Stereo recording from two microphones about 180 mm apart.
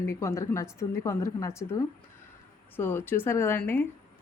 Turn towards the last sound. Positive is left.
turn(degrees=10)  # may be behind; listen again after turning